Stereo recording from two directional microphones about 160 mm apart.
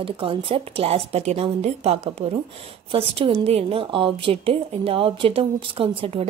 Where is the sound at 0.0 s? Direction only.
35° right (ahead or behind).